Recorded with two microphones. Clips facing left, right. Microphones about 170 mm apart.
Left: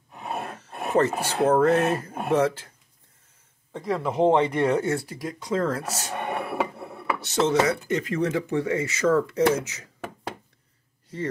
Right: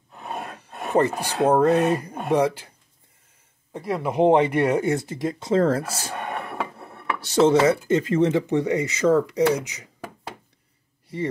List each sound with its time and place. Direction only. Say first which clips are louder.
0.1 s roar: left 1 dB; 10° left (ahead or behind)
0.9 s speech: right 1 dB; 15° right (ahead or behind)
3.7 s speech: right 2 dB; 10° right (ahead or behind); by 6.1 s 30° right (ahead or behind)
6.2 s a sound: left 5 dB; 10° left (ahead or behind)
7.2 s speech: right 5 dB; 35° right (ahead or behind); by 9.8 s 15° right (ahead or behind)